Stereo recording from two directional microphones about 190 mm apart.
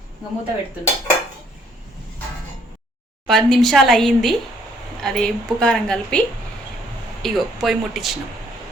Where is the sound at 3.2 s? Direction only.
Centre (ahead or behind).